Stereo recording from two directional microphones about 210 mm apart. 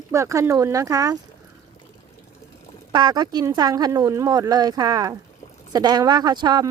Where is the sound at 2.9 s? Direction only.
20° right (ahead or behind).